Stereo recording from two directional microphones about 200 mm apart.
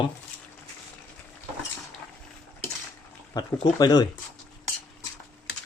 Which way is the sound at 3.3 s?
20° left (ahead or behind).